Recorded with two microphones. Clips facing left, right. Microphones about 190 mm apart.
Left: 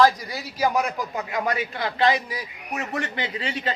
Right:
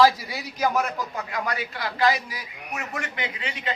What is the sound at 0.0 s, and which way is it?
A man's voice, 5° right (ahead or behind).